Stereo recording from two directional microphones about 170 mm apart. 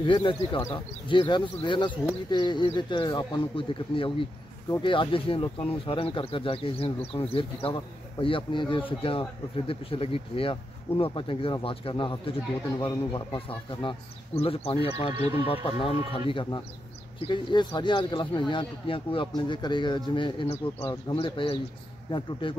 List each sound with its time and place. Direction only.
0.0 s speech: 30° left (ahead or behind)
15.1 s speech: 25° right (ahead or behind)
15.4 s speech: 35° left (ahead or behind)